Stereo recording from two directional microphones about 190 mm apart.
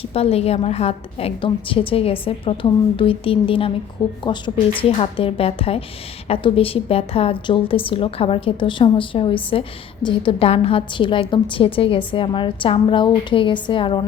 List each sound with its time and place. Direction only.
0.1 s a woman's voice: 30° left (ahead or behind)